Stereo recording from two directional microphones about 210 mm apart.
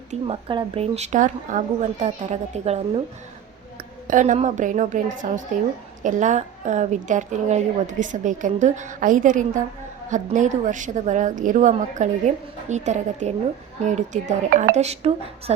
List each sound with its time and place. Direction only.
0.1 s a woman's voice: 25° right (ahead or behind)
4.0 s a woman's voice: 40° right (ahead or behind)